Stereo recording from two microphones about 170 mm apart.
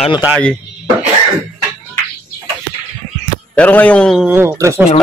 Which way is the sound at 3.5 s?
10° left (ahead or behind).